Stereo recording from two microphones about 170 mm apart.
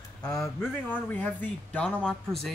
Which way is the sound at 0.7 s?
10° left (ahead or behind).